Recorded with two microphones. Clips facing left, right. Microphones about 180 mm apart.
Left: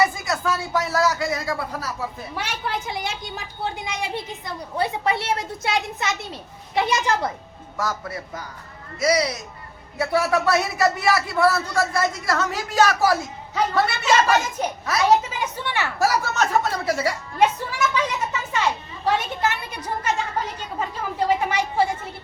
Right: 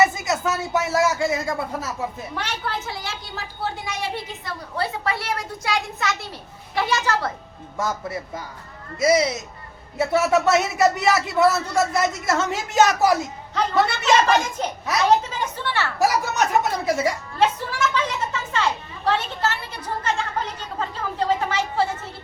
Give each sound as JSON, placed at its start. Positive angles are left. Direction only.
{"t": 0.0, "sound": "a man's voice", "side_deg": -20}
{"t": 2.3, "sound": "a woman's voice", "side_deg": 10}
{"t": 7.8, "sound": "a man's voice", "side_deg": -25}
{"t": 14.0, "sound": "a woman's voice", "side_deg": 10}
{"t": 16.0, "sound": "speech", "side_deg": -15}
{"t": 17.4, "sound": "a sound", "side_deg": 10}
{"t": 19.0, "sound": "a woman's voice", "side_deg": 10}